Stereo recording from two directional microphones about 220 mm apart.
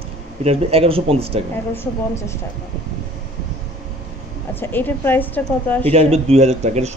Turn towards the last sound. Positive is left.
turn(degrees=-30)  # may be behind; listen again after turning